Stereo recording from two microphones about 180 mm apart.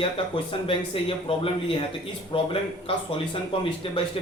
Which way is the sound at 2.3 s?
30° left (ahead or behind).